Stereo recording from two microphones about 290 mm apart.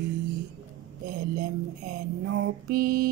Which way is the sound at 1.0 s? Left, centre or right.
Right.